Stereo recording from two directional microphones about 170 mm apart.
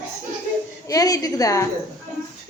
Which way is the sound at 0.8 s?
20° left (ahead or behind).